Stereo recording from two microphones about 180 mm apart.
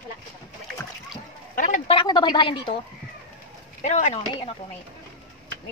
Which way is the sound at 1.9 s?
25° left (ahead or behind).